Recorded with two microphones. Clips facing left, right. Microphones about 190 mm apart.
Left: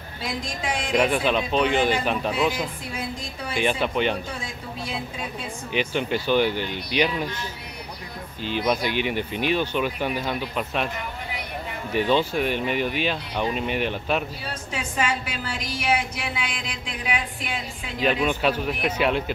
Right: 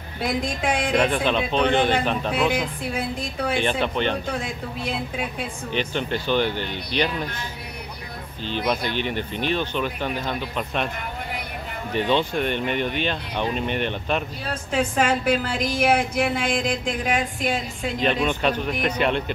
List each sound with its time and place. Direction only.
0.2 s speech: 60° right (ahead or behind)
0.9 s speech: 5° left (ahead or behind)
3.5 s speech: 5° left (ahead or behind)
5.7 s speech: 10° left (ahead or behind)
8.5 s speech: 10° left (ahead or behind)
11.9 s speech: 5° left (ahead or behind)
14.7 s a woman's voice: 55° right (ahead or behind)
17.9 s speech: 5° left (ahead or behind)